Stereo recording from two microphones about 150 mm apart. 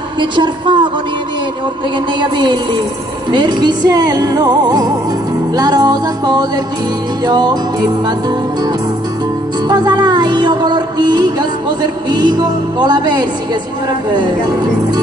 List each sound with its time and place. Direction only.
0.2 s a woman's voice: 30° right (ahead or behind)
2.1 s a woman's voice: 30° right (ahead or behind)
3.3 s music: 30° right (ahead or behind)